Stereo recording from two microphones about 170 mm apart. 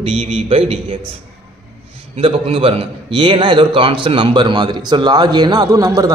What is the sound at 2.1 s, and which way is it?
A man's voice, 35° right (ahead or behind).